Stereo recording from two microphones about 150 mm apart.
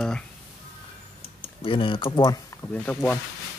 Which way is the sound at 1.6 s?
35° left (ahead or behind).